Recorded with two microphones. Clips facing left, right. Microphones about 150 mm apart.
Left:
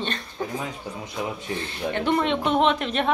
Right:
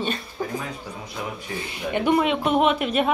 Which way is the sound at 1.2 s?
20° left (ahead or behind).